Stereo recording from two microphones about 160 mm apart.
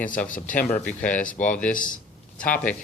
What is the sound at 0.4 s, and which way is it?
Speech, 55° left (ahead or behind).